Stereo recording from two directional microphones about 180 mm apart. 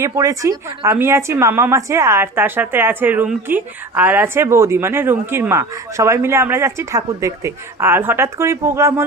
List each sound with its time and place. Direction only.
0.0 s a woman's voice: 15° right (ahead or behind)